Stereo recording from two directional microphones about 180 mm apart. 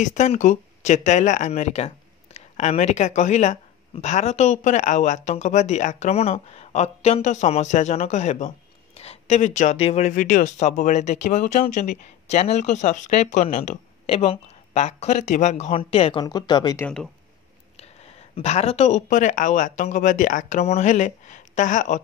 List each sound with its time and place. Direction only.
0.0 s speech: 40° left (ahead or behind); by 16.8 s 25° left (ahead or behind)
16.8 s speech: 5° left (ahead or behind)
18.3 s speech: 35° left (ahead or behind)